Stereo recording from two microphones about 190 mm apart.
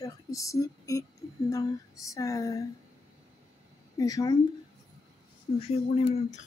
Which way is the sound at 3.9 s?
20° left (ahead or behind).